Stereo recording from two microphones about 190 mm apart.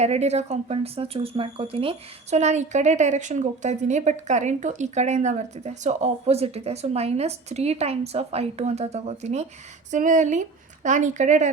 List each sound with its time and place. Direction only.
0.0 s speech: 35° right (ahead or behind)